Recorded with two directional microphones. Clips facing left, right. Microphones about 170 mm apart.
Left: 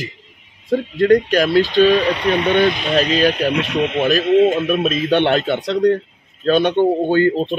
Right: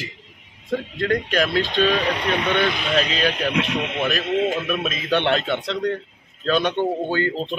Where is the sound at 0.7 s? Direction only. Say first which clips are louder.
Left 9 dB; 35° left (ahead or behind).